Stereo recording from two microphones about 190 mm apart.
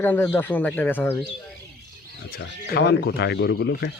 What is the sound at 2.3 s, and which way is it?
Speech, 55° left (ahead or behind).